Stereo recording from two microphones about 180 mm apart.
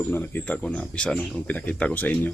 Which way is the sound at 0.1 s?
10° left (ahead or behind).